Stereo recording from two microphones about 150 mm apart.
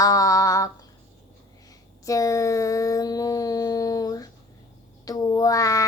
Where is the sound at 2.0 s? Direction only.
20° left (ahead or behind).